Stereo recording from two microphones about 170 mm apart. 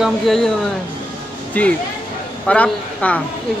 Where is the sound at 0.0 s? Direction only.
Centre (ahead or behind).